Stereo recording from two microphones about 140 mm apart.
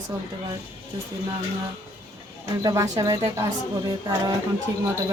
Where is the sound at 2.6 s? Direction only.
20° right (ahead or behind).